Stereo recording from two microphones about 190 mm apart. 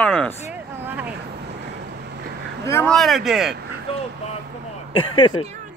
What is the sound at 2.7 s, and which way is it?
Speech, 10° left (ahead or behind).